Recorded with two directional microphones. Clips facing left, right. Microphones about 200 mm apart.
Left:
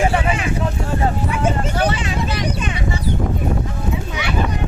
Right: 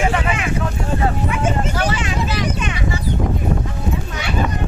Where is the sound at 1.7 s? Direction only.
30° left (ahead or behind).